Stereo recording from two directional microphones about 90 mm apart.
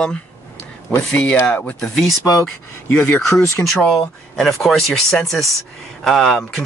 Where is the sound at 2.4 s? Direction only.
20° left (ahead or behind).